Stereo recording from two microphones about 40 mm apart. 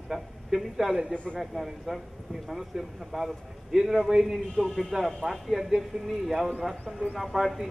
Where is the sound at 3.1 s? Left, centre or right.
Centre.